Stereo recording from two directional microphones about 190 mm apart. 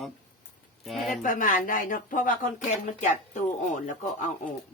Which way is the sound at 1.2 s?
45° left (ahead or behind).